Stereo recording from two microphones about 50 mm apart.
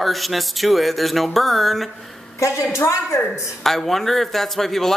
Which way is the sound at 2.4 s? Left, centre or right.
Left.